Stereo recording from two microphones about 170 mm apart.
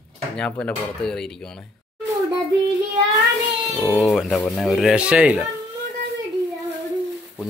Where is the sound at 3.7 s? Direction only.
10° left (ahead or behind).